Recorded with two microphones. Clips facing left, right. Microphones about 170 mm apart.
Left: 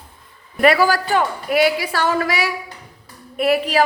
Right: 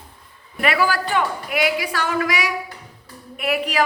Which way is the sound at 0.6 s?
40° left (ahead or behind).